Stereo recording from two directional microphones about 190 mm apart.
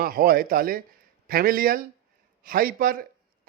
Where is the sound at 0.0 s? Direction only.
50° right (ahead or behind).